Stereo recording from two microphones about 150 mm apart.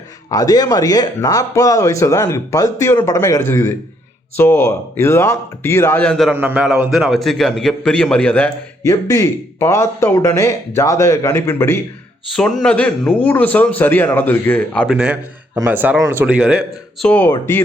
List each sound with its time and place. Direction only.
0.3 s speech: 25° left (ahead or behind); by 6.3 s 5° left (ahead or behind)
6.3 s a man's voice: 10° right (ahead or behind); by 8.5 s 10° left (ahead or behind)
8.8 s speech: 20° left (ahead or behind)
12.4 s speech: 5° left (ahead or behind)
14.8 s a man's voice: 5° right (ahead or behind)
17.1 s speech: 10° left (ahead or behind)